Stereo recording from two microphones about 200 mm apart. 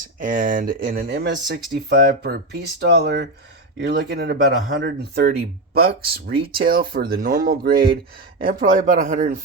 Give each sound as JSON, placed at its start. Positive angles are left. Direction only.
{"t": 0.2, "sound": "speech", "side_deg": -40}